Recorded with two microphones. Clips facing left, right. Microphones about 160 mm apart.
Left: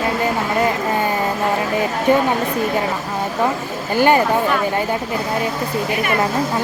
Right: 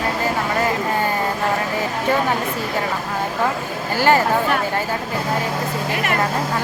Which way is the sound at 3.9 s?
20° left (ahead or behind).